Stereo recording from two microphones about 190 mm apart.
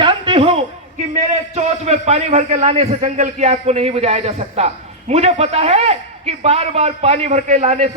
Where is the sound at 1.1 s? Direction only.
35° right (ahead or behind).